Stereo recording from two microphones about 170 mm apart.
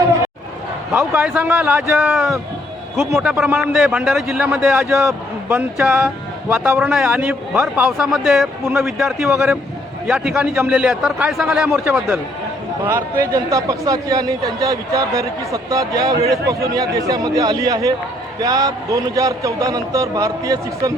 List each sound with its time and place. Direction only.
0.9 s a man's voice: 10° right (ahead or behind)